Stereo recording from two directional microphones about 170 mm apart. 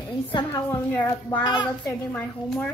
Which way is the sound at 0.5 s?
15° left (ahead or behind).